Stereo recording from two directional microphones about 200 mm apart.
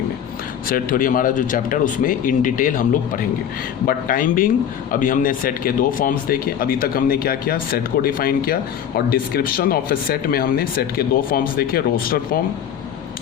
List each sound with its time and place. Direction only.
0.7 s a man's voice: 45° left (ahead or behind)
3.8 s a man's voice: 45° left (ahead or behind)